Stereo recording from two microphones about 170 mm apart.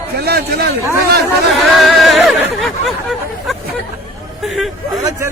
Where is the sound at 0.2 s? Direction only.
70° right (ahead or behind).